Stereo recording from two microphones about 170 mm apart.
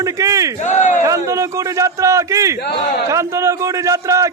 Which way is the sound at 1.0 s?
20° right (ahead or behind).